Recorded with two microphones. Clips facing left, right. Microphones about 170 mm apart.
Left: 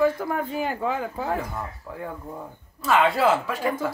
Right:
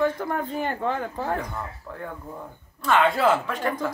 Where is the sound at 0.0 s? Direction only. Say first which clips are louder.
Left 2 dB; 5° left (ahead or behind).